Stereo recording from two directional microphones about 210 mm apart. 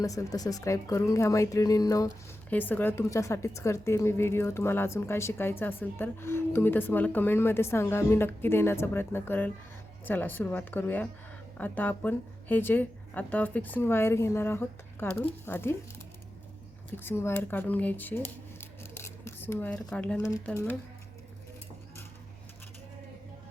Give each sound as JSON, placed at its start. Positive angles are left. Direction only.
{"t": 0.0, "sound": "a woman's voice", "side_deg": 15}
{"t": 16.9, "sound": "a woman's voice", "side_deg": 10}
{"t": 18.8, "sound": "a sound", "side_deg": 10}
{"t": 20.4, "sound": "a woman's voice", "side_deg": 10}